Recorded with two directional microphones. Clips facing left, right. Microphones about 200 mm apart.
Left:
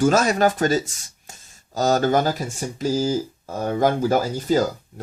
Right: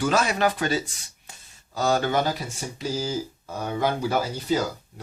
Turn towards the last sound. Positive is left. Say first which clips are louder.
# left 5 dB
turn(degrees=45)  # may be behind; listen again after turning